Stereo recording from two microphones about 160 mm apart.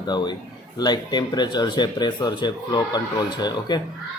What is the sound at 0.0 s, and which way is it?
Speech, 25° left (ahead or behind).